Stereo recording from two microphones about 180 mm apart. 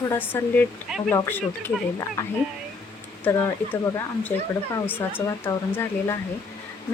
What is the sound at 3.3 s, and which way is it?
Speech, 10° left (ahead or behind).